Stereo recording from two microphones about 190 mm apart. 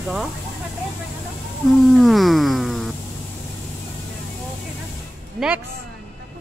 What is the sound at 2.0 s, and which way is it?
Music, centre (ahead or behind).